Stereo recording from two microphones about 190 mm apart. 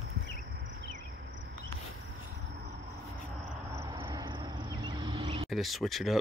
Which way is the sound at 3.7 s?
20° right (ahead or behind).